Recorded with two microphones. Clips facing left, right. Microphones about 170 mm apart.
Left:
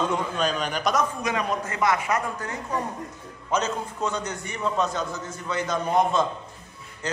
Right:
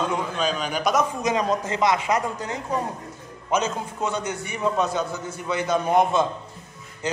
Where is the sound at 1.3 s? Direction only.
20° right (ahead or behind).